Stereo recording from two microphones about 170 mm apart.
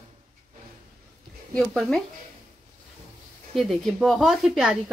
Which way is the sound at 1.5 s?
Centre (ahead or behind).